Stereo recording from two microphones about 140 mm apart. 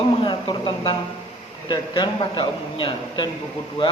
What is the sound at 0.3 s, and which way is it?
A man's voice, 35° left (ahead or behind).